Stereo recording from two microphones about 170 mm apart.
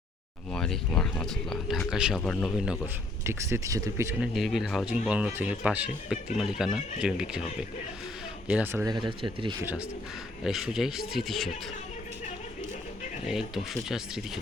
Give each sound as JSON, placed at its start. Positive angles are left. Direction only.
{"t": 0.5, "sound": "speech", "side_deg": 5}
{"t": 4.2, "sound": "speech", "side_deg": 0}
{"t": 8.4, "sound": "speech", "side_deg": -10}
{"t": 9.0, "sound": "speech", "side_deg": -30}
{"t": 10.4, "sound": "speech", "side_deg": 0}